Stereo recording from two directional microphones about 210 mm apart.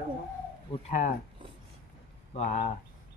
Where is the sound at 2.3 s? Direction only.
30° left (ahead or behind).